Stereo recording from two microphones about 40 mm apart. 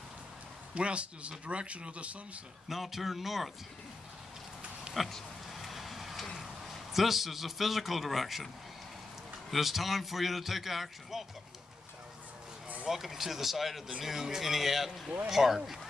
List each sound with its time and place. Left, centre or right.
0.7 s speech: right
2.7 s a man's voice: centre
5.0 s a man's voice: centre
5.5 s a sound: centre
9.5 s a man's voice: centre
12.9 s a man's voice: centre